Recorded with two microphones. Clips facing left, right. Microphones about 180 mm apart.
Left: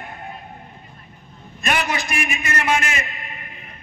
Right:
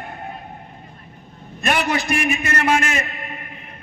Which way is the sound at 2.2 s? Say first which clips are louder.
Right 1 dB; 45° right (ahead or behind).